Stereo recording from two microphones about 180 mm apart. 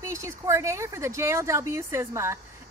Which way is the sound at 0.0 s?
15° right (ahead or behind).